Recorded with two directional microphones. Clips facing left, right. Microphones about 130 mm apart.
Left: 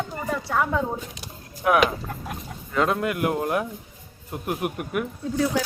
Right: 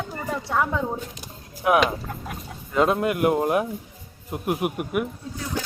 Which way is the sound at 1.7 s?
Centre (ahead or behind).